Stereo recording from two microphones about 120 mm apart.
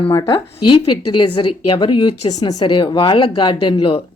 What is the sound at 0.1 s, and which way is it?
Speech, 30° left (ahead or behind).